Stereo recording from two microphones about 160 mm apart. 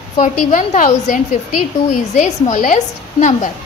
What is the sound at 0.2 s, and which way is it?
A woman's voice, 50° left (ahead or behind).